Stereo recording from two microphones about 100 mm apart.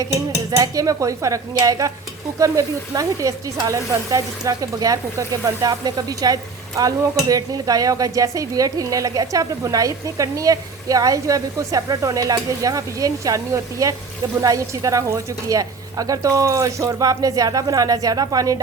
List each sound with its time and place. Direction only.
0.5 s speech: 35° right (ahead or behind)